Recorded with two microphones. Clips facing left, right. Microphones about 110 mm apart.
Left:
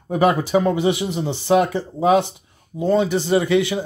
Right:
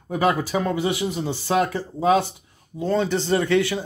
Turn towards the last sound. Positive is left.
turn(degrees=15)  # may be behind; listen again after turning